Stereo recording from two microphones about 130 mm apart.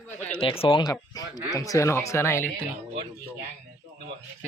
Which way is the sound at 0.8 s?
30° left (ahead or behind).